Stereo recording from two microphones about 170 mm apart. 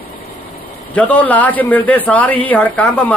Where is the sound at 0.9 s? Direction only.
10° left (ahead or behind).